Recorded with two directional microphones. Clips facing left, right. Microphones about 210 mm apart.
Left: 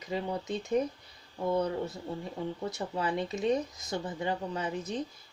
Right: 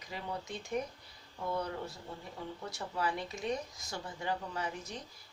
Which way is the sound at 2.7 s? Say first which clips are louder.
Left 4 dB; 20° left (ahead or behind).